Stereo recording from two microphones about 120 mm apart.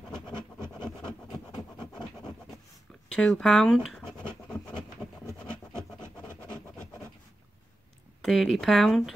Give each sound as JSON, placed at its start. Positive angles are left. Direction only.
{"t": 1.5, "sound": "scratch", "side_deg": 35}
{"t": 3.1, "sound": "speech", "side_deg": 5}
{"t": 8.2, "sound": "speech", "side_deg": 0}